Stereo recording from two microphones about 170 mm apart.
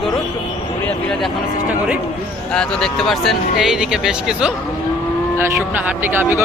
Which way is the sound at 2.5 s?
5° left (ahead or behind).